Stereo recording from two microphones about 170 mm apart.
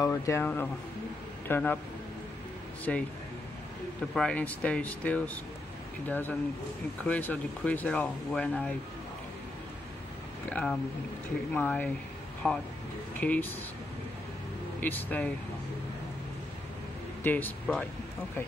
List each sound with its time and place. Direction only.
0.0 s speech: 20° left (ahead or behind)
2.9 s speech: 5° left (ahead or behind)
4.1 s speech: 5° left (ahead or behind)
10.5 s speech: 5° left (ahead or behind)
14.8 s speech: 10° left (ahead or behind)
17.2 s speech: 10° left (ahead or behind)